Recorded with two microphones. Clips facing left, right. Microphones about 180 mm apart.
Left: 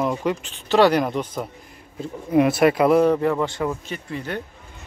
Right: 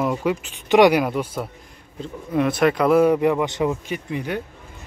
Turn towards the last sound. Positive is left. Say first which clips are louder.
# right 3 dB
turn(degrees=-15)  # may be behind; listen again after turning